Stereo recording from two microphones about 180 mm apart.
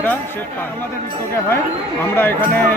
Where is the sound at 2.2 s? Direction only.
10° left (ahead or behind).